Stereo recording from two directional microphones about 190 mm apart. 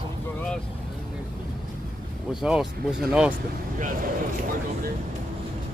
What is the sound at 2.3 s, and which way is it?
Speech, centre (ahead or behind).